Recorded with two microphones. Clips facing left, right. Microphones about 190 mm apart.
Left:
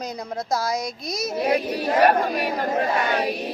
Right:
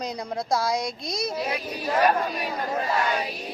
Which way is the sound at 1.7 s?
65° left (ahead or behind).